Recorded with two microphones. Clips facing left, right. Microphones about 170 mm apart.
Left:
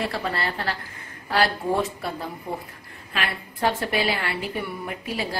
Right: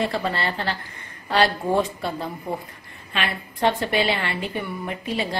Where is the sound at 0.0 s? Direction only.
Centre (ahead or behind).